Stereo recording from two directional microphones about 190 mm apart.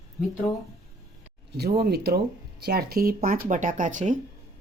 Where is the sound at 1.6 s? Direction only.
55° right (ahead or behind); by 4.1 s 40° right (ahead or behind).